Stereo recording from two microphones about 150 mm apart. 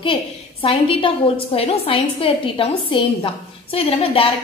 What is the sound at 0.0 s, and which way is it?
Speech, 35° left (ahead or behind).